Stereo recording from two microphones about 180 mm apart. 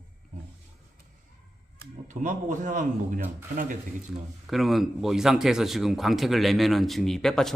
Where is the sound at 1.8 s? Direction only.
45° right (ahead or behind).